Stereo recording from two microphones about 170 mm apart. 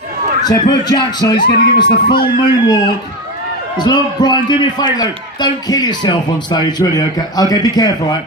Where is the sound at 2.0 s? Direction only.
55° left (ahead or behind).